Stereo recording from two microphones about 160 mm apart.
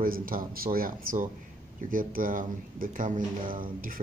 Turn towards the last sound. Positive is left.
turn(degrees=-60)  # may be behind; listen again after turning